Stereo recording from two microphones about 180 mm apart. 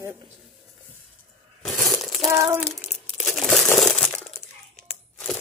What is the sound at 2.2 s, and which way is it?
Speech, 15° right (ahead or behind).